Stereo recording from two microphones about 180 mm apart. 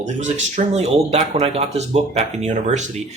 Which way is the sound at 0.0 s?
40° right (ahead or behind).